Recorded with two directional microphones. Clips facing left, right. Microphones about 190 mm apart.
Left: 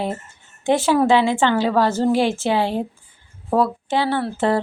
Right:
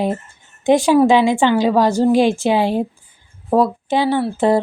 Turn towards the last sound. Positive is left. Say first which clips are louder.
# right 4 dB
turn(degrees=-15)  # may be behind; listen again after turning